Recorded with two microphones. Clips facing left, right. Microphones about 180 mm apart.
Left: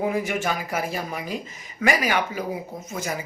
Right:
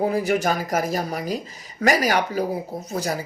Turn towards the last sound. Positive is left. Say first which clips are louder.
# right 4 dB
turn(degrees=-35)  # may be behind; listen again after turning